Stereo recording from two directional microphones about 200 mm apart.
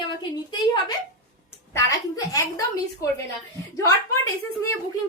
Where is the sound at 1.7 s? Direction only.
15° left (ahead or behind).